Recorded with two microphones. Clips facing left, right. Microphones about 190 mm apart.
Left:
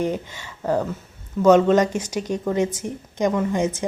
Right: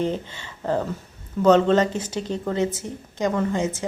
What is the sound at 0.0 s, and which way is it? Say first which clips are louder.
A woman's voice: left 1 dB; 10° left (ahead or behind).